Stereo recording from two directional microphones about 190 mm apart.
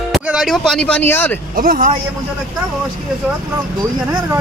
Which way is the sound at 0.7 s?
5° left (ahead or behind).